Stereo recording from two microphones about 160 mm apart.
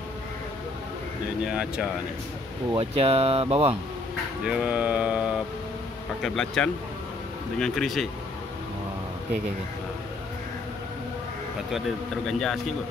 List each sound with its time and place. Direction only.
1.4 s speech: 5° right (ahead or behind)
2.8 s speech: 40° right (ahead or behind)
4.5 s mantra: 5° right (ahead or behind)
6.2 s speech: 5° left (ahead or behind)
12.3 s speech: centre (ahead or behind)